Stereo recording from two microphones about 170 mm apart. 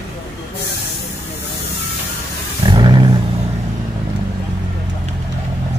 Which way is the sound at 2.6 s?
25° right (ahead or behind).